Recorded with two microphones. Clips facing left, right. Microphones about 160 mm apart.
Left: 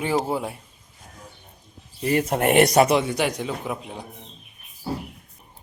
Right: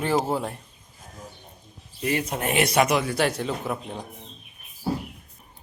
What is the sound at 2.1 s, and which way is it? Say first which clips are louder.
Speech: left 8 dB; 60° left (ahead or behind).